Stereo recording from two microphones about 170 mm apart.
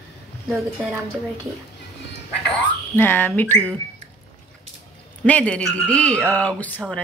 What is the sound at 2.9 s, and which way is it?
Speech, 15° left (ahead or behind).